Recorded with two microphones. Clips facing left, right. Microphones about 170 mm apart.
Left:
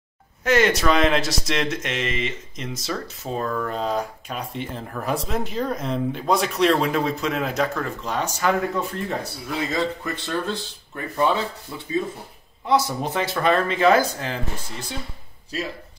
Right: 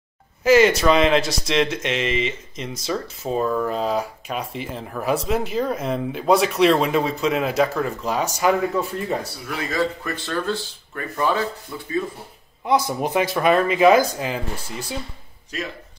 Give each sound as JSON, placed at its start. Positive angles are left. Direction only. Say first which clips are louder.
{"t": 0.4, "sound": "speech", "louder": "right 4 dB", "side_deg": 0}
{"t": 9.5, "sound": "speech", "louder": "right 1 dB", "side_deg": 20}
{"t": 12.6, "sound": "speech", "louder": "right 1 dB", "side_deg": -15}